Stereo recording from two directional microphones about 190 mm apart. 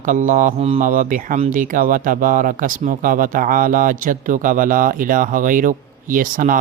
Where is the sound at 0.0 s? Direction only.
45° right (ahead or behind).